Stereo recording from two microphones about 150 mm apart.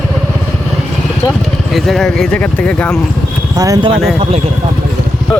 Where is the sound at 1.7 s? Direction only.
Centre (ahead or behind).